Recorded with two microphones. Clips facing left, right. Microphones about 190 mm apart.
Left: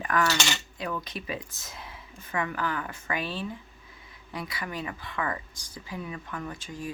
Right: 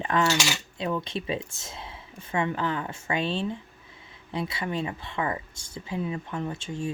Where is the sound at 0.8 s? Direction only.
25° right (ahead or behind).